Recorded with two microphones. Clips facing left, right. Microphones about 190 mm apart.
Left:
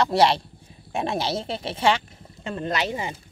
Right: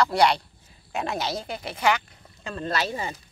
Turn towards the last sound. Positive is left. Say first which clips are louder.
# left 1 dB
turn(degrees=15)  # may be behind; listen again after turning